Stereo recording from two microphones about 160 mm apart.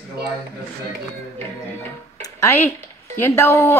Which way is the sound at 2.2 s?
15° left (ahead or behind).